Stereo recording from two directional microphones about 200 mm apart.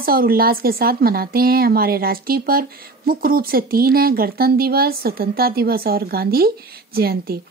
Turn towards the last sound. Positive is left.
turn(degrees=-50)  # may be behind; listen again after turning